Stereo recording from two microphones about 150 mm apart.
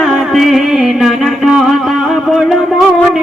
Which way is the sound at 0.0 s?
Centre (ahead or behind).